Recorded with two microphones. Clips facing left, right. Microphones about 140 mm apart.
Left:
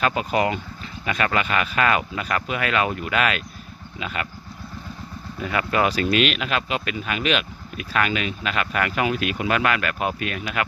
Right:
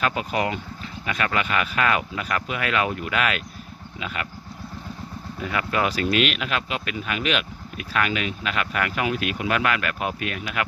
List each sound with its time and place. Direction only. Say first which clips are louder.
0.0 s speech: left 3 dB; centre (ahead or behind)
5.4 s speech: left 2 dB; centre (ahead or behind)